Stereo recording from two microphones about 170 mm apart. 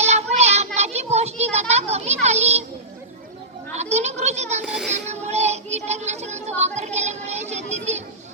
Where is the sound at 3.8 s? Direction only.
40° right (ahead or behind).